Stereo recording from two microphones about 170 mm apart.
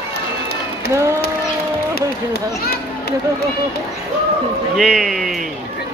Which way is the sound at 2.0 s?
70° left (ahead or behind).